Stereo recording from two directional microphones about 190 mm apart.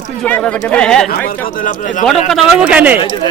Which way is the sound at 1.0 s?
45° left (ahead or behind).